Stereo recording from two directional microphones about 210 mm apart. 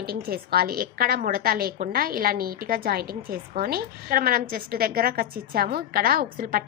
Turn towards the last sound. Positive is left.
turn(degrees=-45)  # may be behind; listen again after turning